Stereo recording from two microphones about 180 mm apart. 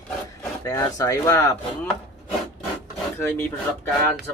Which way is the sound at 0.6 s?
15° left (ahead or behind).